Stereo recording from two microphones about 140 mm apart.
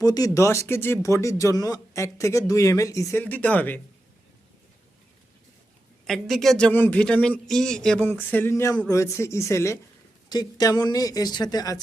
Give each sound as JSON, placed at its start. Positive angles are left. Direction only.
{"t": 0.0, "sound": "speech", "side_deg": 25}
{"t": 6.1, "sound": "speech", "side_deg": 0}
{"t": 8.0, "sound": "a sound", "side_deg": 10}
{"t": 8.9, "sound": "speech", "side_deg": 20}